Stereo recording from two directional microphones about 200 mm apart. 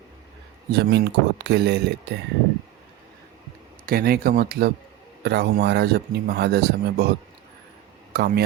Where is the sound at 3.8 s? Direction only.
50° right (ahead or behind).